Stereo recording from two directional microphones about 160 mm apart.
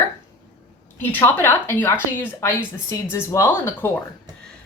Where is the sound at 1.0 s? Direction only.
10° left (ahead or behind).